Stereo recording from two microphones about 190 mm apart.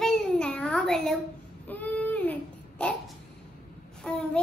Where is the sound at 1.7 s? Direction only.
10° left (ahead or behind).